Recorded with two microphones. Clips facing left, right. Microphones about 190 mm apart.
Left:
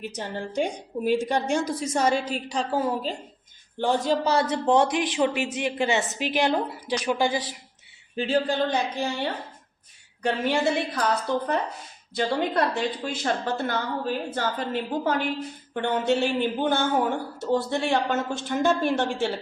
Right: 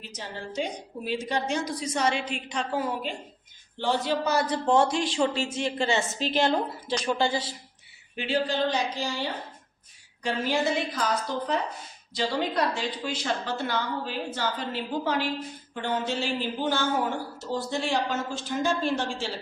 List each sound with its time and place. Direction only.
0.0 s a woman's voice: 55° left (ahead or behind); by 3.2 s 35° left (ahead or behind)
3.8 s a woman's voice: 45° left (ahead or behind)
4.3 s speech: 25° left (ahead or behind)
8.1 s a sound: 35° left (ahead or behind)
8.4 s speech: 55° left (ahead or behind)
10.4 s a woman's voice: 65° left (ahead or behind)
15.7 s speech: 65° left (ahead or behind)